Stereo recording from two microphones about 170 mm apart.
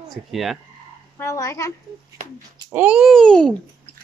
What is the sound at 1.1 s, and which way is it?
Speech, 20° left (ahead or behind).